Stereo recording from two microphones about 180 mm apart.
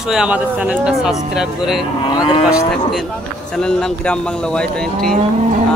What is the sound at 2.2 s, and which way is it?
Vehicle, 30° left (ahead or behind).